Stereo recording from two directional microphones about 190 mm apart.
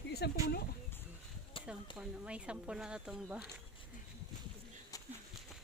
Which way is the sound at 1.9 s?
5° right (ahead or behind).